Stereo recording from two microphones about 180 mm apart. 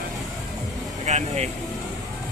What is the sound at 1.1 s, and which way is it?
Vehicle, 40° right (ahead or behind).